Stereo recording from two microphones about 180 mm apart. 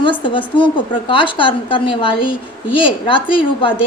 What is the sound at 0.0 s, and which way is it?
A woman's voice, 30° left (ahead or behind).